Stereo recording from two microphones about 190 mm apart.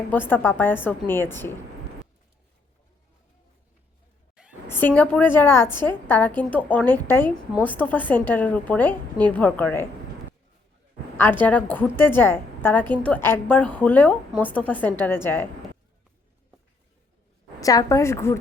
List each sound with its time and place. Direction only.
0.1 s a woman's voice: 10° left (ahead or behind)
4.4 s a sound: 5° right (ahead or behind)
4.7 s a woman's voice: 10° left (ahead or behind)
11.2 s a woman's voice: 10° left (ahead or behind)
17.6 s a woman's voice: 20° left (ahead or behind)